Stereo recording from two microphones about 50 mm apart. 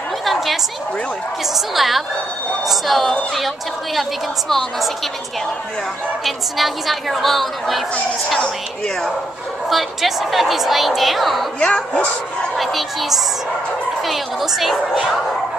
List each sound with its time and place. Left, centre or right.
0.2 s a sound: centre
1.5 s a woman's voice: centre
6.2 s a woman's voice: centre
8.4 s a woman's voice: centre
9.7 s a woman's voice: centre
11.6 s speech: left
12.5 s a woman's voice: centre